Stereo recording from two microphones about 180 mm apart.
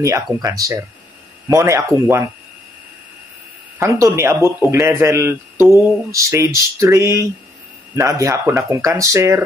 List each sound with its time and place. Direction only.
0.0 s a man's voice: 15° right (ahead or behind)
3.8 s a man's voice: 15° right (ahead or behind)